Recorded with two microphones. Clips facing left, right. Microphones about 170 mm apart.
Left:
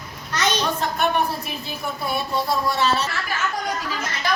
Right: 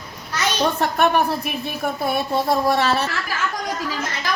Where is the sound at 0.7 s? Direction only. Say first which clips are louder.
Right 4 dB; 60° right (ahead or behind).